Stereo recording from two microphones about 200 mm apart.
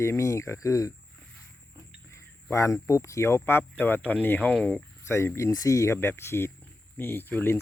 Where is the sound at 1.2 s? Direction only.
5° left (ahead or behind).